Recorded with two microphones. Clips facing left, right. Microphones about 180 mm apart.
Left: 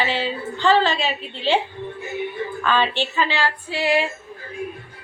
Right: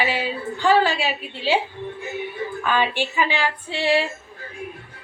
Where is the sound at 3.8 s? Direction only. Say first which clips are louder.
Even; 30° right (ahead or behind).